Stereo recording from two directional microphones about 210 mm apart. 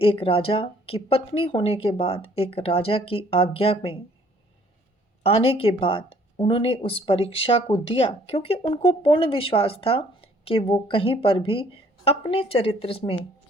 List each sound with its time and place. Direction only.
0.0 s speech: 25° left (ahead or behind)
5.2 s speech: 25° left (ahead or behind)